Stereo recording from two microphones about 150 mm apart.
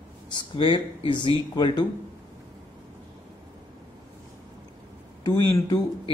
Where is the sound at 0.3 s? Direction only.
30° left (ahead or behind).